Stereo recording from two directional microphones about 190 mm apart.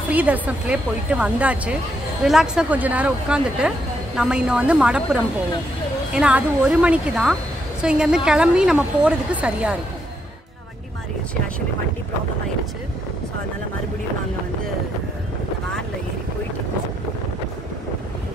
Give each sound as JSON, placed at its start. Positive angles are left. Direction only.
{"t": 0.1, "sound": "a woman's voice", "side_deg": -10}